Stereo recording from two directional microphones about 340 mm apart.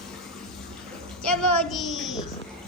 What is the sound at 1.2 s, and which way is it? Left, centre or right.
Speech, centre.